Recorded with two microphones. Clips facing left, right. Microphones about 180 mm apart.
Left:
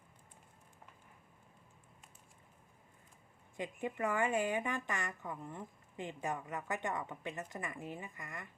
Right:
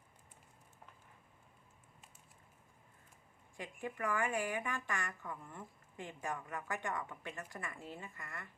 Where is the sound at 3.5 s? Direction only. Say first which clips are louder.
Left 4 dB; 20° left (ahead or behind).